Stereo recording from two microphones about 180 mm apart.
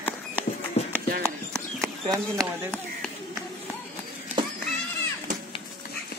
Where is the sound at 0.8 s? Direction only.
35° left (ahead or behind).